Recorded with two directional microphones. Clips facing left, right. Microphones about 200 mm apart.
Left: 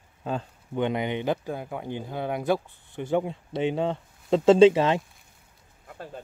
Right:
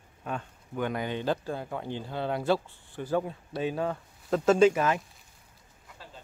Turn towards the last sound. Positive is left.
turn(degrees=55)  # may be behind; listen again after turning